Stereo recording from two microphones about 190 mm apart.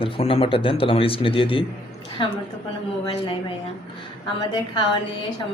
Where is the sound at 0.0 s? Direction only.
30° left (ahead or behind).